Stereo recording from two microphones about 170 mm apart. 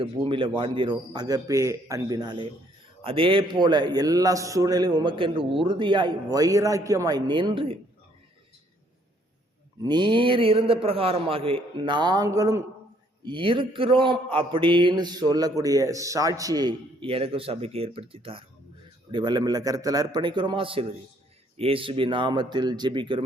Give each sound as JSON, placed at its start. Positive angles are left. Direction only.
{"t": 0.0, "sound": "a man's voice", "side_deg": -30}
{"t": 9.8, "sound": "a man's voice", "side_deg": -25}